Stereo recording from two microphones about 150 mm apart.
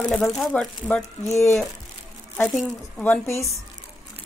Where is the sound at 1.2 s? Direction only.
20° left (ahead or behind).